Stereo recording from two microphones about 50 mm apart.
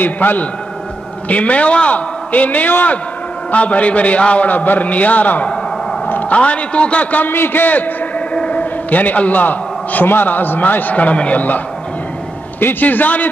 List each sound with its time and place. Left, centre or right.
0.0 s a man's voice: left
1.3 s a man's voice: left
7.2 s a man's voice: left